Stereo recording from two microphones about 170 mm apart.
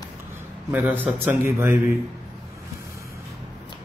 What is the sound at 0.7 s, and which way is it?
Speech, 10° right (ahead or behind).